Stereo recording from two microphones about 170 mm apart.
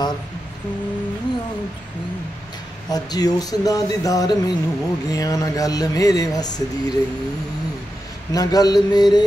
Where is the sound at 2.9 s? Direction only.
25° left (ahead or behind).